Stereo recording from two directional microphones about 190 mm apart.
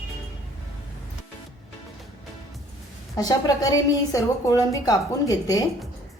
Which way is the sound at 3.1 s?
20° left (ahead or behind).